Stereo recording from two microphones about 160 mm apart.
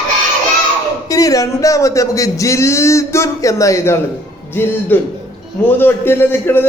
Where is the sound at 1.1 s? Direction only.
20° left (ahead or behind).